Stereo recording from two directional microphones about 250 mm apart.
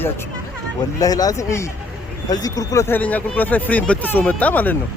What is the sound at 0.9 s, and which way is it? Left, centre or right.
Speech, centre.